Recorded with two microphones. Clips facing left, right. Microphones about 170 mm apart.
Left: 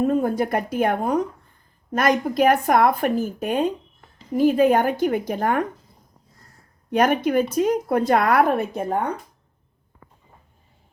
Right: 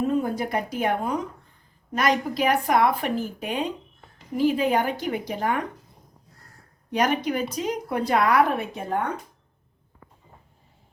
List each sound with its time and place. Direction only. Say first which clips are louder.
0.0 s a woman's voice: left 4 dB; 50° left (ahead or behind)
6.9 s a woman's voice: left 5 dB; 50° left (ahead or behind)